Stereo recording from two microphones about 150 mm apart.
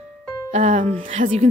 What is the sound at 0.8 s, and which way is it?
Speech, 40° right (ahead or behind).